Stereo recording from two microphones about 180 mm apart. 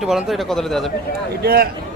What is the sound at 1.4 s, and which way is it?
Speech, 60° right (ahead or behind).